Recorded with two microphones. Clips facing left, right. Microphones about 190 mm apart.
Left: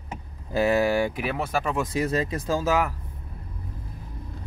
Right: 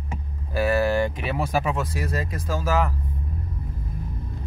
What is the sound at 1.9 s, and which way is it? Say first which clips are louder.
Speech: left 4 dB; 25° left (ahead or behind).